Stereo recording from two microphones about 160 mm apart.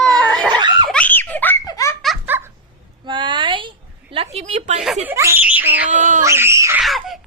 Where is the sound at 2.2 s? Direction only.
15° right (ahead or behind).